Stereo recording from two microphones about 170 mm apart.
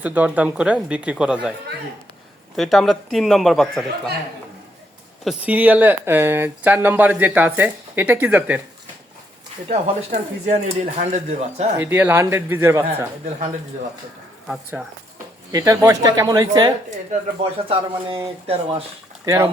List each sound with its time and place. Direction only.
0.0 s speech: 10° right (ahead or behind)
2.6 s a man's voice: centre (ahead or behind)
5.2 s speech: 5° right (ahead or behind)
9.6 s speech: 45° right (ahead or behind)
11.8 s speech: 15° right (ahead or behind)
15.5 s speech: 20° right (ahead or behind)
17.7 s speech: 30° right (ahead or behind)
19.2 s speech: 15° right (ahead or behind)